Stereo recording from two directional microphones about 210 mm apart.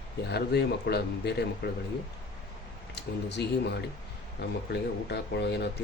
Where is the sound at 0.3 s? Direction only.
50° left (ahead or behind).